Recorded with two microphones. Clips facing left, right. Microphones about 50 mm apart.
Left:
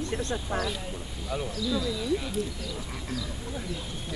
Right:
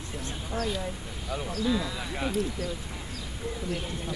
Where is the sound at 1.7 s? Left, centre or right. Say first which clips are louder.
Left 3 dB; right.